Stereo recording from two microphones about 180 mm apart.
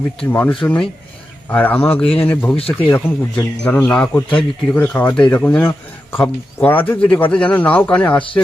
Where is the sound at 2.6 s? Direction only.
30° left (ahead or behind).